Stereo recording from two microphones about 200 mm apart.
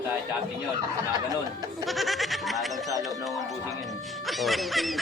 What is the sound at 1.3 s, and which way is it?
Speech, 20° right (ahead or behind).